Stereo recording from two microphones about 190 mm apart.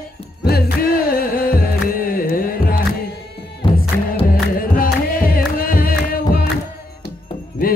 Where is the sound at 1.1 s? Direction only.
50° left (ahead or behind).